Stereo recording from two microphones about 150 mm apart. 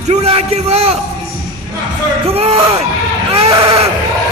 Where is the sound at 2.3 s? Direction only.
40° right (ahead or behind).